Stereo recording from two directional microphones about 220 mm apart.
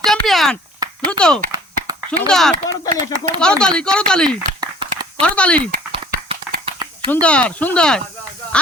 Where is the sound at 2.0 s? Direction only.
5° left (ahead or behind).